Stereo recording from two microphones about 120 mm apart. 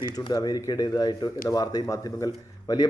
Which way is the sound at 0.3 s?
35° left (ahead or behind).